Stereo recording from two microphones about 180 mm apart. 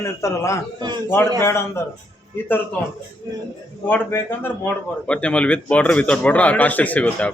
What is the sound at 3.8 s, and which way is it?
A man's voice, 10° left (ahead or behind).